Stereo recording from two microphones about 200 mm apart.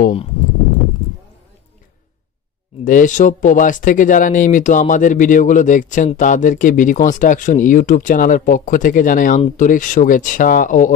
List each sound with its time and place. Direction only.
2.8 s speech: 40° left (ahead or behind)